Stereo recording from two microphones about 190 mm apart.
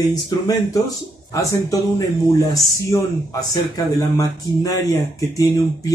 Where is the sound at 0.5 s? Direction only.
15° left (ahead or behind).